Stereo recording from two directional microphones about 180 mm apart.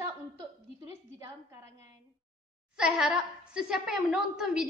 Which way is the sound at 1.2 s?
15° right (ahead or behind).